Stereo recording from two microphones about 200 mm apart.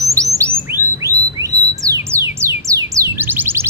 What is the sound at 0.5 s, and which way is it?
Bird, 15° right (ahead or behind).